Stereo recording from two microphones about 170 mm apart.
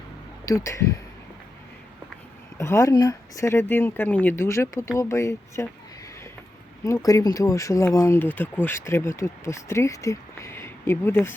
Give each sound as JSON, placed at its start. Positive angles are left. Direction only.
{"t": 0.4, "sound": "speech", "side_deg": 20}
{"t": 2.6, "sound": "speech", "side_deg": 15}
{"t": 6.8, "sound": "speech", "side_deg": 20}